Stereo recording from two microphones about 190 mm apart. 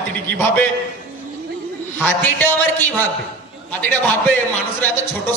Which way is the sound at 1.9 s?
10° left (ahead or behind).